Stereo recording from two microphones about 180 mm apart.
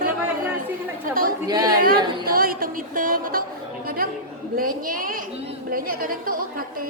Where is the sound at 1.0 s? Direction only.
55° right (ahead or behind).